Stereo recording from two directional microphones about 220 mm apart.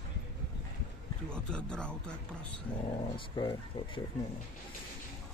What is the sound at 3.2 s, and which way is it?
Speech, 20° left (ahead or behind).